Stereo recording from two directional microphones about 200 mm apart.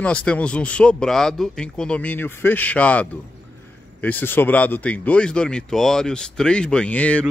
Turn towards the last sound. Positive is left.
turn(degrees=5)  # may be behind; listen again after turning